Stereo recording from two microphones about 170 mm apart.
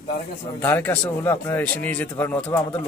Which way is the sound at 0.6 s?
10° left (ahead or behind).